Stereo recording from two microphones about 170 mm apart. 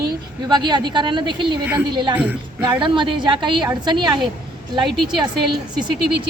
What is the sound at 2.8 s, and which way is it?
Speech, 30° right (ahead or behind).